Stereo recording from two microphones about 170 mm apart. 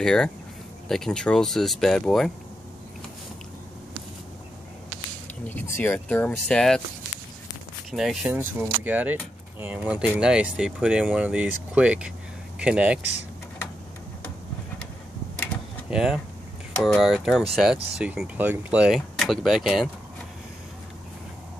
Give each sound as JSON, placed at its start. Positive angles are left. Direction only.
{"t": 0.0, "sound": "speech", "side_deg": 5}
{"t": 5.4, "sound": "speech", "side_deg": 10}
{"t": 7.9, "sound": "speech", "side_deg": -5}
{"t": 15.9, "sound": "speech", "side_deg": -5}